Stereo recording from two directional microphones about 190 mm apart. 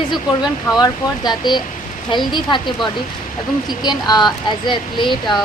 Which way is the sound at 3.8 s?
20° left (ahead or behind).